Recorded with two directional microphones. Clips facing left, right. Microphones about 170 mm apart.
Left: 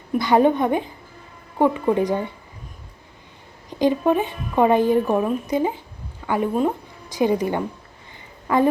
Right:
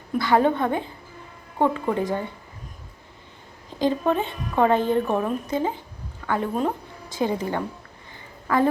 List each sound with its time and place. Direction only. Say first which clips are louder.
0.2 s a woman's voice: left 3 dB; 20° left (ahead or behind)
3.7 s a woman's voice: left 4 dB; 15° left (ahead or behind)
7.1 s a woman's voice: left 5 dB; 15° left (ahead or behind)